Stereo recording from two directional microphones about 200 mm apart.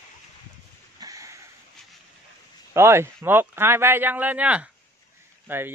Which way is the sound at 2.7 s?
15° right (ahead or behind).